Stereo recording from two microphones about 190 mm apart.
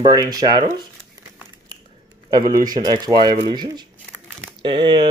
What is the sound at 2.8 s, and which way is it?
Speech, 25° right (ahead or behind).